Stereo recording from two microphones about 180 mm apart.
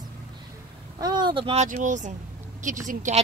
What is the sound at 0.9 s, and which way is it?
A child's voice, 25° right (ahead or behind).